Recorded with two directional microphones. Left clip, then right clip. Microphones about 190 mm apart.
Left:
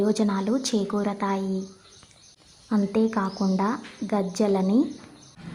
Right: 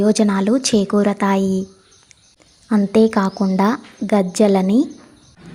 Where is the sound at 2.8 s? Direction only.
30° right (ahead or behind).